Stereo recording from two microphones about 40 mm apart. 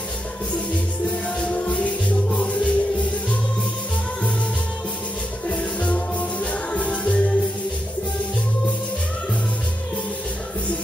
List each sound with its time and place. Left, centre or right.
1.4 s music: left
5.5 s music: left